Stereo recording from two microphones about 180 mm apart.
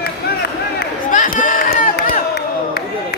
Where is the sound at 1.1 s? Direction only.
45° left (ahead or behind).